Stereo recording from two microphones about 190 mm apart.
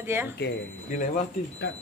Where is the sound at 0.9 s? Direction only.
40° left (ahead or behind).